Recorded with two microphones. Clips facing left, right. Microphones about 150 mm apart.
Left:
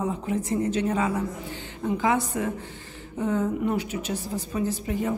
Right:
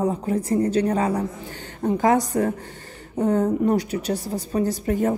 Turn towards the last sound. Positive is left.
turn(degrees=-45)  # may be behind; listen again after turning